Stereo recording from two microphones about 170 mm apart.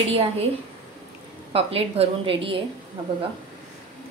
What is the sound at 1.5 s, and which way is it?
A woman's voice, 35° right (ahead or behind).